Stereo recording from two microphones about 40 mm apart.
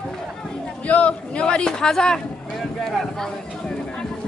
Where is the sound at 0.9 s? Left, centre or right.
Left.